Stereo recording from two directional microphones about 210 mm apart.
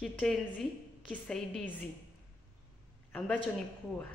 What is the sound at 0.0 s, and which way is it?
A woman's voice, 5° left (ahead or behind).